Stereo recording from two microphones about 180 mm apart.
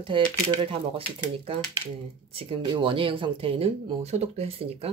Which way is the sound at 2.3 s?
30° right (ahead or behind).